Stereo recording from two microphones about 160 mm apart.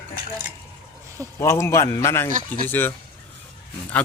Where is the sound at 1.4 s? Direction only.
15° left (ahead or behind).